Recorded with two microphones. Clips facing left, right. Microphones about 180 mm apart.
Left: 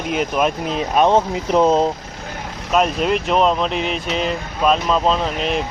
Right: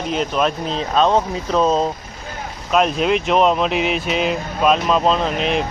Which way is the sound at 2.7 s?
Centre (ahead or behind).